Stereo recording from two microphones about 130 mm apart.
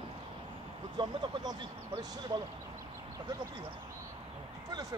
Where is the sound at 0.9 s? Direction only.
30° right (ahead or behind).